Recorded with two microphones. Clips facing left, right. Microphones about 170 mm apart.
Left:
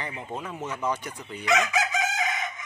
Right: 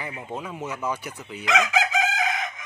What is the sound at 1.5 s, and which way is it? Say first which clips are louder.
Chicken: right 1 dB; 90° right.